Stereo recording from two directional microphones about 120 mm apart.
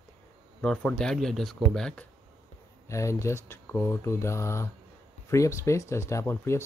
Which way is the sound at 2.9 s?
25° left (ahead or behind).